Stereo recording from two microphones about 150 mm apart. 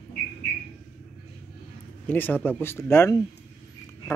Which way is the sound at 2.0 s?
15° left (ahead or behind).